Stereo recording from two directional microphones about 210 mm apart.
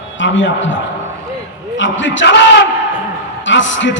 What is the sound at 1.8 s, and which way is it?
Speech, 60° left (ahead or behind).